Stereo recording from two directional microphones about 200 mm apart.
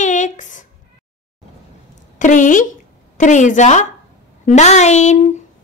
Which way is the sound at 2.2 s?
40° left (ahead or behind).